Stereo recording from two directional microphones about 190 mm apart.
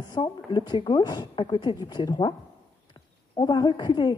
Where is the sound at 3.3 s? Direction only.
20° left (ahead or behind).